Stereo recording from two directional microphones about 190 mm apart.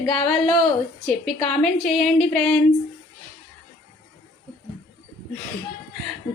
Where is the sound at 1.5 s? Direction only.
5° left (ahead or behind).